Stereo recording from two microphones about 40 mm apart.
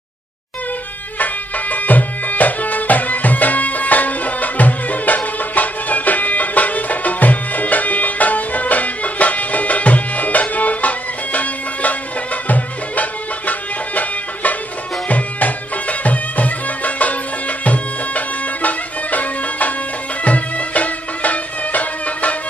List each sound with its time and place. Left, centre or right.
1.2 s music: left